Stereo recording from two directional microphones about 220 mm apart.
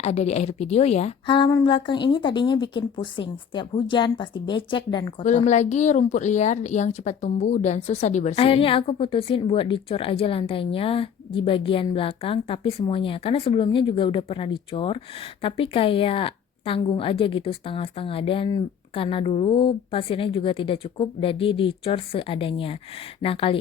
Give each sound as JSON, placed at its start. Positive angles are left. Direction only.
{"t": 0.0, "sound": "a woman's voice", "side_deg": 30}
{"t": 5.4, "sound": "a woman's voice", "side_deg": 30}